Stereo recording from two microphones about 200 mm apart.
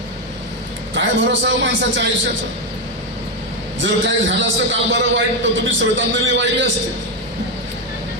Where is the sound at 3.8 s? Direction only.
65° right (ahead or behind).